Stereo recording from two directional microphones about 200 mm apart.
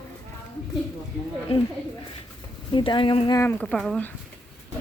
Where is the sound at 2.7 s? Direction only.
25° left (ahead or behind); by 4.1 s 5° left (ahead or behind).